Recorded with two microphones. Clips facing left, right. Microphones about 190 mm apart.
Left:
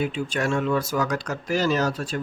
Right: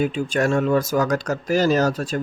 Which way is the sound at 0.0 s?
45° right (ahead or behind).